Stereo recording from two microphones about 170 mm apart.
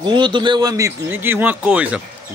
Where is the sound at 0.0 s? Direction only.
25° right (ahead or behind).